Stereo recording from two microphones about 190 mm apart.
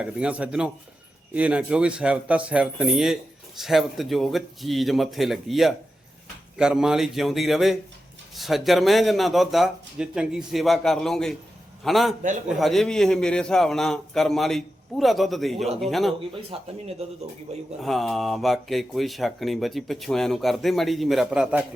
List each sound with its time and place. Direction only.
0.0 s speech: 5° right (ahead or behind)
16.3 s speech: 30° right (ahead or behind)
17.8 s speech: centre (ahead or behind)